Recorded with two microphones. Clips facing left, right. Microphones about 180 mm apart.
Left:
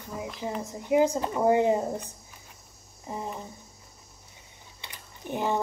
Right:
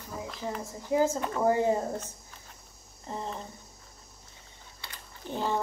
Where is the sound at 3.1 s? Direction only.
10° left (ahead or behind).